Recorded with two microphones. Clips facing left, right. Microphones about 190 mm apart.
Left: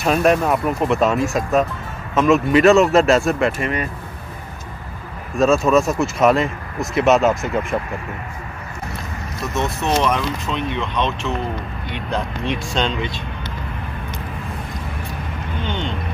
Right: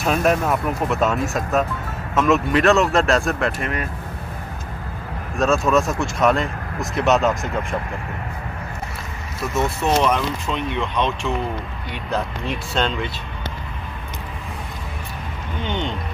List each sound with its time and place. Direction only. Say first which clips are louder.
0.0 s speech: left 3 dB; centre (ahead or behind)
5.3 s speech: left 3 dB; centre (ahead or behind)
9.4 s speech: right 1 dB; 5° right (ahead or behind)
11.9 s speech: even; 5° right (ahead or behind)
15.6 s music: right 1 dB; 15° right (ahead or behind)